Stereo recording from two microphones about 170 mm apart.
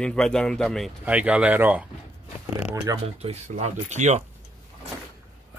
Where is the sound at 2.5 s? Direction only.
20° right (ahead or behind).